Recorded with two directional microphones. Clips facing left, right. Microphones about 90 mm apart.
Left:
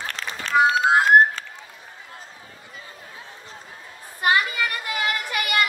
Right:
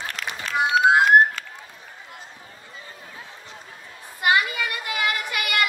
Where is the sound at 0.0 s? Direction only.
35° left (ahead or behind).